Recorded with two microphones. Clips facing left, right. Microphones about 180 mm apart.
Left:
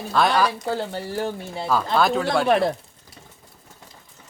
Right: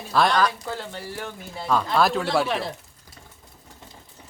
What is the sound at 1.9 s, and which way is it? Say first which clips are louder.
Speech: left 1 dB; centre (ahead or behind).